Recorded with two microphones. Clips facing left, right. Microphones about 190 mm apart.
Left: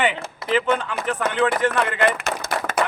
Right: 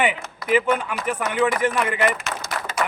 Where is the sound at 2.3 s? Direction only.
55° left (ahead or behind).